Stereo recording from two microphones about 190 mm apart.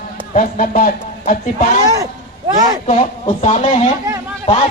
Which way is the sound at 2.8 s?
35° left (ahead or behind).